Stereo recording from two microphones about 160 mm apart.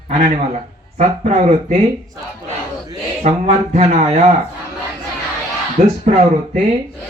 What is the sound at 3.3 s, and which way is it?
Speech, 50° right (ahead or behind).